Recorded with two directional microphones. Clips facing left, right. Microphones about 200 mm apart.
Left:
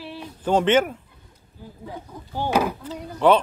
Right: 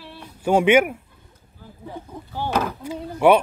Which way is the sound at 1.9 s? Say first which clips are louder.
Even; 15° left (ahead or behind).